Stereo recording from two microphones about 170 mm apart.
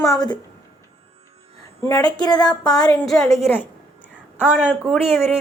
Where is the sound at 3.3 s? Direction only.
15° left (ahead or behind).